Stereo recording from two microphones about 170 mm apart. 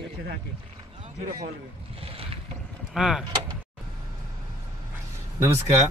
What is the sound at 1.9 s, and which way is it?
Boat, 35° right (ahead or behind).